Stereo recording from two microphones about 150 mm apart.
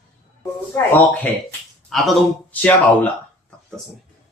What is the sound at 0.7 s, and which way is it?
Speech, 10° left (ahead or behind).